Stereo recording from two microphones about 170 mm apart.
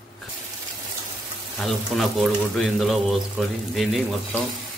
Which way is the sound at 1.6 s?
Centre (ahead or behind).